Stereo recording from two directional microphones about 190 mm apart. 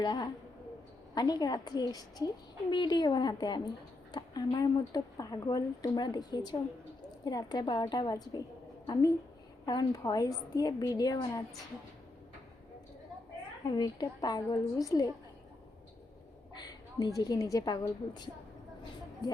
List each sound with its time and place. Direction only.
0.0 s a woman's voice: 20° left (ahead or behind)
13.7 s a woman's voice: 20° left (ahead or behind)
16.6 s a woman's voice: 20° left (ahead or behind)